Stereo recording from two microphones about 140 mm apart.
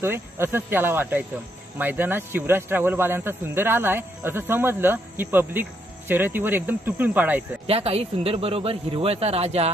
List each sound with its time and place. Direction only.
0.0 s speech: 15° right (ahead or behind)
7.6 s speech: 45° right (ahead or behind)